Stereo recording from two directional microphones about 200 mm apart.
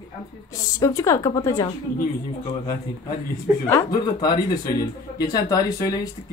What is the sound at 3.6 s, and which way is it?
A woman's voice, 10° left (ahead or behind).